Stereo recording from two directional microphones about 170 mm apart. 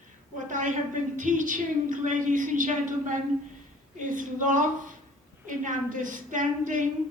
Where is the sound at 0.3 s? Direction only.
50° right (ahead or behind).